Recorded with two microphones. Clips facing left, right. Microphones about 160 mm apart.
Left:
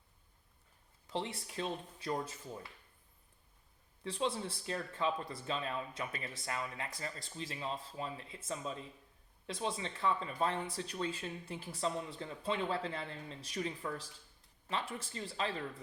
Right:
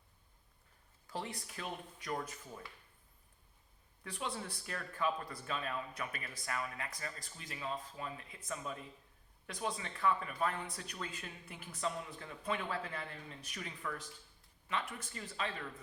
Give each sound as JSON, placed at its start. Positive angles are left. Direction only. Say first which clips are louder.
{"t": 1.0, "sound": "speech", "louder": "left 3 dB", "side_deg": 25}
{"t": 4.0, "sound": "speech", "louder": "left 6 dB", "side_deg": 25}